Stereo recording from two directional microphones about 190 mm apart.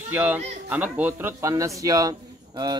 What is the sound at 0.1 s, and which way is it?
A man's voice, 10° right (ahead or behind).